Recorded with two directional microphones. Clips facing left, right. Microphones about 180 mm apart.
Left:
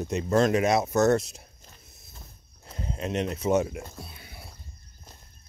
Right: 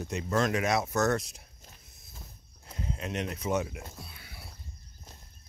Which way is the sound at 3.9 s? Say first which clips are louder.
Left 4 dB; 25° left (ahead or behind).